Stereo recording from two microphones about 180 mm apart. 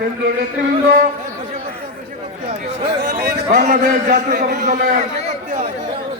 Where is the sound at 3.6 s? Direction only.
45° right (ahead or behind).